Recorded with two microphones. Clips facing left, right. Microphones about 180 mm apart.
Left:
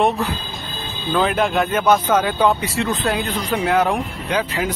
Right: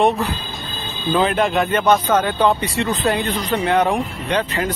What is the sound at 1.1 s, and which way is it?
Speech, centre (ahead or behind).